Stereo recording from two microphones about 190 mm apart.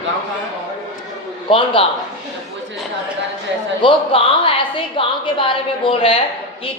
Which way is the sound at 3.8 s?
25° left (ahead or behind).